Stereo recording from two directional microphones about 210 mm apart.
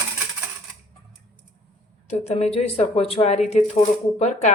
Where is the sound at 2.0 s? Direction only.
35° left (ahead or behind).